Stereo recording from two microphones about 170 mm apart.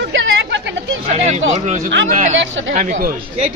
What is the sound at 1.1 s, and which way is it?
A man's voice, 40° right (ahead or behind).